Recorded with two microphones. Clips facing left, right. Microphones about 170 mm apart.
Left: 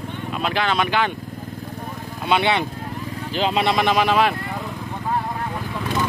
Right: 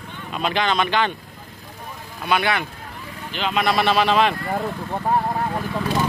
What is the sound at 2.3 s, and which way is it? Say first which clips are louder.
Speech: left 2 dB; 25° left (ahead or behind).